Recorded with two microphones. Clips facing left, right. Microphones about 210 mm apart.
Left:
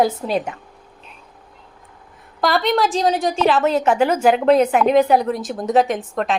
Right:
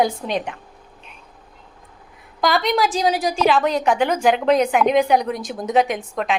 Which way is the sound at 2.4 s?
Centre (ahead or behind).